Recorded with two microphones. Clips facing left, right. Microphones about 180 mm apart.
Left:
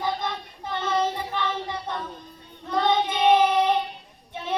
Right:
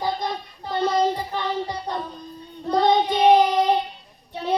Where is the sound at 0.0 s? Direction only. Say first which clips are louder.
Right 2 dB; 40° right (ahead or behind).